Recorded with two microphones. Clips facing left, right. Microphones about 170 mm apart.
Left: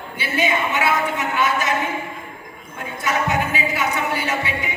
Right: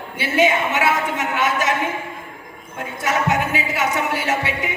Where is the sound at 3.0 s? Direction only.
80° right.